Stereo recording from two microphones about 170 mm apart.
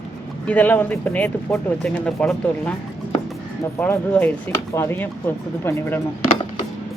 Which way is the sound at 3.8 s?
10° left (ahead or behind).